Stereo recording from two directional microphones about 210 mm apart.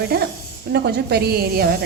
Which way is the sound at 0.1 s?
50° right (ahead or behind).